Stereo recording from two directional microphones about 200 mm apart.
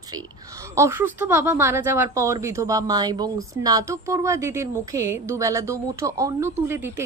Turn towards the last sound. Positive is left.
turn(degrees=-15)  # may be behind; listen again after turning